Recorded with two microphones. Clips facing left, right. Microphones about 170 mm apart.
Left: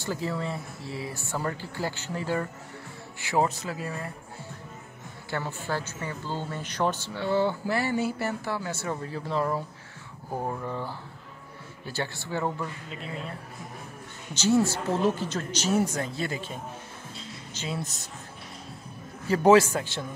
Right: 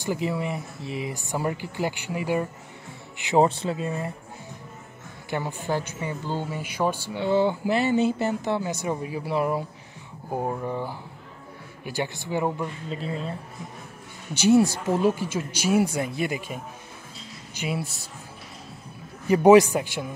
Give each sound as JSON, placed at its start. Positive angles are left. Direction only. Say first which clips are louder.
{"t": 0.0, "sound": "speech", "louder": "right 4 dB", "side_deg": -15}
{"t": 5.3, "sound": "speech", "louder": "right 4 dB", "side_deg": -15}
{"t": 12.9, "sound": "speech", "louder": "right 6 dB", "side_deg": -35}
{"t": 14.3, "sound": "speech", "louder": "right 5 dB", "side_deg": -15}
{"t": 19.2, "sound": "speech", "louder": "right 4 dB", "side_deg": -15}